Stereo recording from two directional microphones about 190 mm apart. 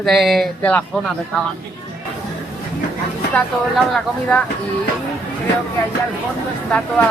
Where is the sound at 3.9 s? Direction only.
5° left (ahead or behind).